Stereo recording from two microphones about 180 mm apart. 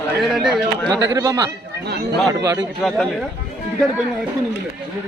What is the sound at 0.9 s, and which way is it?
Speech, 20° right (ahead or behind).